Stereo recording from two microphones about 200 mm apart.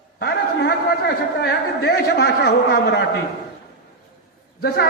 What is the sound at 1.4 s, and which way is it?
A man's voice, 55° left (ahead or behind).